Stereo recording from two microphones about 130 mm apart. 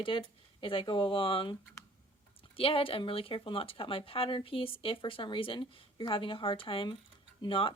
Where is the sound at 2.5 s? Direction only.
45° left (ahead or behind).